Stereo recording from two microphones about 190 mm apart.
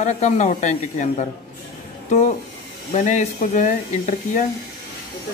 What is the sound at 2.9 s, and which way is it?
Speech, 40° left (ahead or behind).